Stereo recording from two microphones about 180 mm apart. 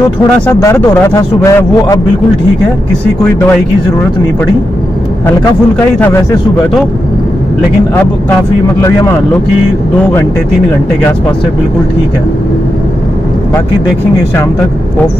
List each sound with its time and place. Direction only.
0.6 s a man's voice: 15° left (ahead or behind)